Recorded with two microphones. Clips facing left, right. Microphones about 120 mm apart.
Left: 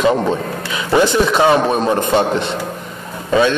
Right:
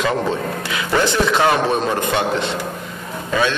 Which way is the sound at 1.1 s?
20° left (ahead or behind).